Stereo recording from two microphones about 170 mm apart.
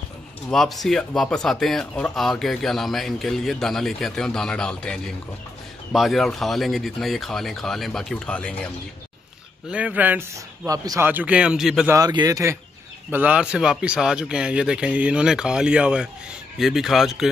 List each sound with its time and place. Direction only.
0.5 s a man's voice: centre (ahead or behind)
9.7 s a man's voice: 5° right (ahead or behind)
11.9 s a man's voice: 25° right (ahead or behind)
13.1 s a man's voice: 10° right (ahead or behind)